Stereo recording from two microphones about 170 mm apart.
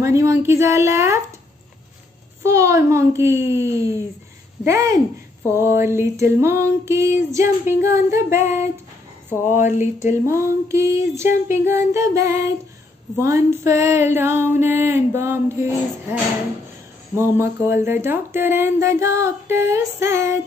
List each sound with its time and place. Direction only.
0.0 s speech: 15° right (ahead or behind)
2.4 s speech: 15° right (ahead or behind)
9.5 s speech: 45° left (ahead or behind)
10.2 s speech: 15° right (ahead or behind)